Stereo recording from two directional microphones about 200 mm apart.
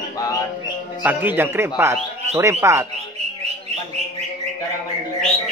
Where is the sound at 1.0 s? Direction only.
10° right (ahead or behind).